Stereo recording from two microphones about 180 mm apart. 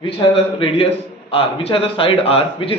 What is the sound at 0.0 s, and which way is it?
A man's voice, 30° left (ahead or behind).